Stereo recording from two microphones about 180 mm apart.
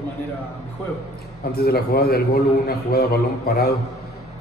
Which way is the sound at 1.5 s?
60° left (ahead or behind).